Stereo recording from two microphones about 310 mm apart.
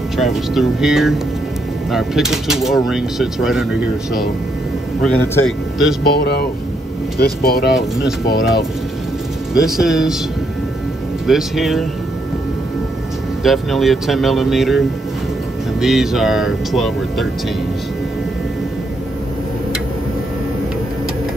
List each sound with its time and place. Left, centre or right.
0.2 s speech: centre
5.0 s speech: centre
6.2 s speech: left
9.5 s speech: centre
11.2 s speech: centre
13.4 s speech: centre
15.8 s speech: centre